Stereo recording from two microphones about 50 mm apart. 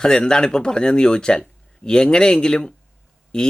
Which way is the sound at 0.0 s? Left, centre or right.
Centre.